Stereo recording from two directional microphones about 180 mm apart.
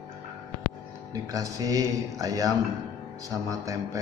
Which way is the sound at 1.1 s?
20° right (ahead or behind).